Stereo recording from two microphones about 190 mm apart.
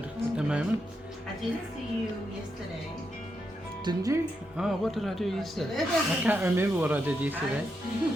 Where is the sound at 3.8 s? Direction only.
20° right (ahead or behind).